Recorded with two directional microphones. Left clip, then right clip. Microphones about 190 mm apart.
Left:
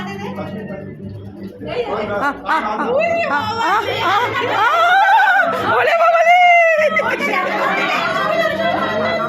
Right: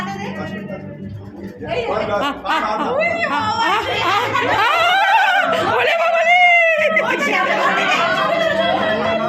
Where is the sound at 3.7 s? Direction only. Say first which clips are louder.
Left 1 dB; centre (ahead or behind).